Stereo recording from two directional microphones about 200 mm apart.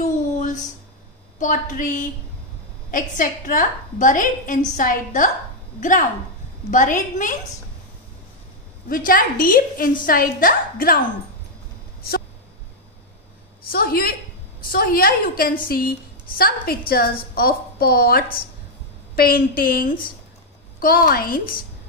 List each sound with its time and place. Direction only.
0.0 s a sound: 40° left (ahead or behind)
1.4 s a woman's voice: 40° left (ahead or behind)
8.8 s a woman's voice: 45° left (ahead or behind)
13.7 s a woman's voice: 50° left (ahead or behind)